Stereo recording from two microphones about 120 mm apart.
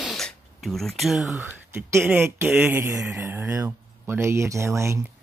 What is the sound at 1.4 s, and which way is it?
A man's voice, 20° right (ahead or behind).